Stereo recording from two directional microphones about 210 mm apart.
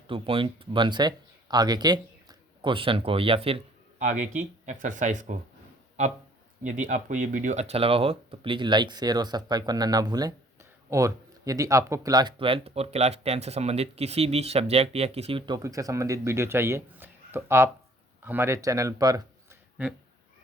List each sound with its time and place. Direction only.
0.1 s speech: 25° right (ahead or behind)